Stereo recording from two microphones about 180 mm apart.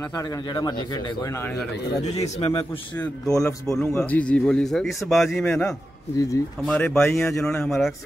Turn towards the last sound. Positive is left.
turn(degrees=0)  # may be behind; listen again after turning